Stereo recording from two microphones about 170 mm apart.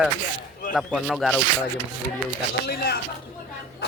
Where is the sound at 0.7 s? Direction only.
5° left (ahead or behind).